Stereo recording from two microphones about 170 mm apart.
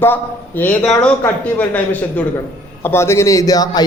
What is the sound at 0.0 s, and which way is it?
A man's voice, 10° left (ahead or behind).